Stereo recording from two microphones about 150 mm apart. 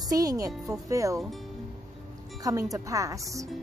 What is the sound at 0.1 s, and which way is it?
Speech, 25° right (ahead or behind).